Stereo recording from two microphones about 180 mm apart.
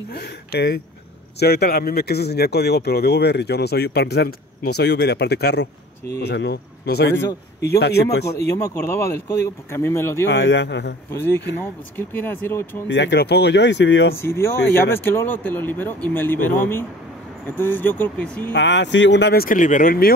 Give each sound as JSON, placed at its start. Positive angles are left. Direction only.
{"t": 0.1, "sound": "speech", "side_deg": 65}
{"t": 7.2, "sound": "speech", "side_deg": 15}
{"t": 7.8, "sound": "speech", "side_deg": 65}
{"t": 8.5, "sound": "speech", "side_deg": 15}
{"t": 10.2, "sound": "speech", "side_deg": 80}
{"t": 11.1, "sound": "speech", "side_deg": 10}
{"t": 12.8, "sound": "speech", "side_deg": 80}
{"t": 14.1, "sound": "speech", "side_deg": 15}
{"t": 18.5, "sound": "speech", "side_deg": 85}